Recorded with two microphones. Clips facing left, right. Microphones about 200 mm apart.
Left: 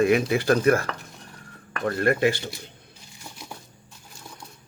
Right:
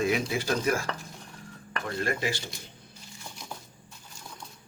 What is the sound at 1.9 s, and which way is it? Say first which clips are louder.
Speech: left 9 dB; 60° left (ahead or behind).